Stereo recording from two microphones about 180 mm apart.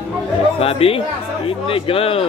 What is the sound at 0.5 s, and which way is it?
Speech, 30° left (ahead or behind).